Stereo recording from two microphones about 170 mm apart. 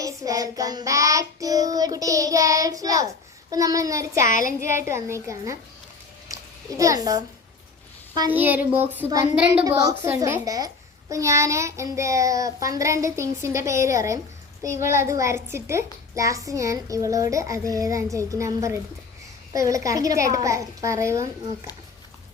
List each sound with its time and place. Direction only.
0.0 s child singing: 20° right (ahead or behind)
4.3 s speech: 50° left (ahead or behind)
4.9 s child singing: 15° right (ahead or behind)
6.2 s a sound: 20° right (ahead or behind)
8.3 s child singing: 10° right (ahead or behind)
9.6 s a child's voice: 20° right (ahead or behind)
11.1 s child singing: 20° right (ahead or behind)
14.6 s a child's voice: 15° right (ahead or behind)